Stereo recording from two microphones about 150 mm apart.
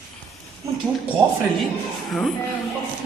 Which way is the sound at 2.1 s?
Centre (ahead or behind).